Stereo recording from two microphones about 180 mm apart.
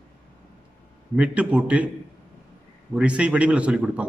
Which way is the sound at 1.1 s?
5° right (ahead or behind).